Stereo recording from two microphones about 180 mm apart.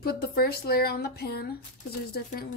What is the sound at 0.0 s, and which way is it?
A woman's voice, 60° left (ahead or behind).